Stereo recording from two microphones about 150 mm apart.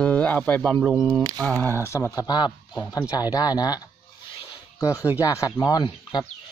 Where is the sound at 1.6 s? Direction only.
15° left (ahead or behind).